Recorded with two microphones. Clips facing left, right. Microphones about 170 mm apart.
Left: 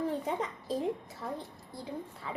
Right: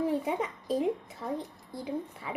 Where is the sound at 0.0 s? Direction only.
10° right (ahead or behind).